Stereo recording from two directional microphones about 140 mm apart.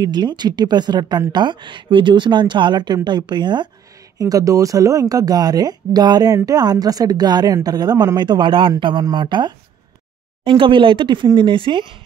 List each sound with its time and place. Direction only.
0.0 s speech: 30° right (ahead or behind)